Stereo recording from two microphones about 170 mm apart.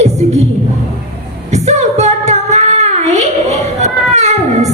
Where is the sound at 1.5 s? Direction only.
40° right (ahead or behind).